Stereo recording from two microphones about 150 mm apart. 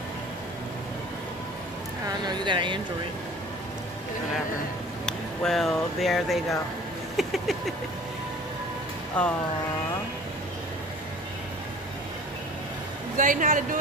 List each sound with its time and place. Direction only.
2.0 s speech: 30° right (ahead or behind)
5.0 s speech: 5° left (ahead or behind)
7.2 s a sound: centre (ahead or behind)
9.2 s speech: 10° left (ahead or behind)
13.2 s a woman's voice: 60° right (ahead or behind)